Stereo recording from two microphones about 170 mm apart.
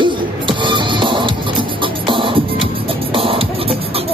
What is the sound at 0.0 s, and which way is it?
Music, 30° right (ahead or behind).